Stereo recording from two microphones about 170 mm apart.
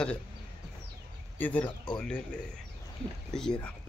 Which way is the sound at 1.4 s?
10° left (ahead or behind).